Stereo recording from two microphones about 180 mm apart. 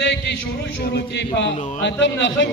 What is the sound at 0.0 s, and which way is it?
A man's voice, 80° left.